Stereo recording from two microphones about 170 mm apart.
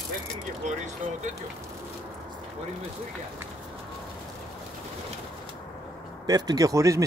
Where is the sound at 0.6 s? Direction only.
45° right (ahead or behind).